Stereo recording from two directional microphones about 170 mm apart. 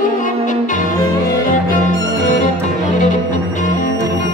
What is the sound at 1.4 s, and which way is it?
Music, 45° left (ahead or behind).